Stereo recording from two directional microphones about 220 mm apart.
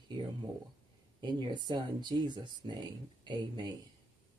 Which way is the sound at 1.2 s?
20° right (ahead or behind).